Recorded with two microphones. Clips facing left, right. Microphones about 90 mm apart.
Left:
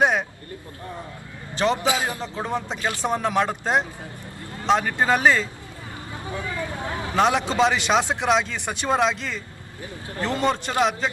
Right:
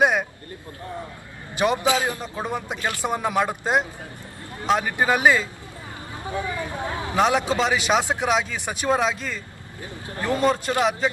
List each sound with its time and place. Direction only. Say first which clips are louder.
0.0 s a sound: right 1 dB; 5° right (ahead or behind)
1.5 s speech: right 1 dB; 15° right (ahead or behind)
1.9 s speech: right 2 dB; 20° left (ahead or behind)
2.2 s speech: left 1 dB; 15° right (ahead or behind)
7.2 s speech: left 1 dB; 5° right (ahead or behind)